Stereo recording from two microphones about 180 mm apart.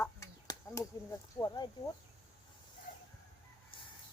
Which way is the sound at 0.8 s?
20° left (ahead or behind).